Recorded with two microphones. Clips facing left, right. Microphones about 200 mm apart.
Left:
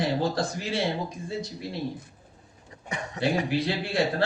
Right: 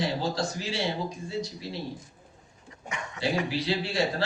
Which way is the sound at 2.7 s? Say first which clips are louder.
Left 3 dB; 35° left (ahead or behind).